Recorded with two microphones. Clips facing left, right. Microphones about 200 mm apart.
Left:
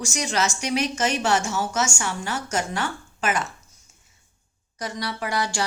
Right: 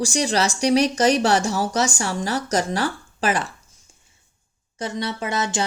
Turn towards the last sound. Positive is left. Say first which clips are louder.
# right 2 dB
turn(degrees=-20)  # may be behind; listen again after turning